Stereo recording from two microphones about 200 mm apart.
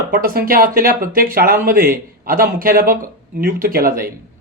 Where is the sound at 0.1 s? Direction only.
45° right (ahead or behind).